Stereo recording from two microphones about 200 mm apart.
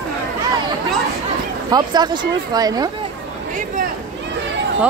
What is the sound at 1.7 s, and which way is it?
Speech, 20° right (ahead or behind).